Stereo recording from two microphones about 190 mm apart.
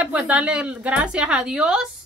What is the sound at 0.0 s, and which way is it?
A woman's voice, 5° right (ahead or behind).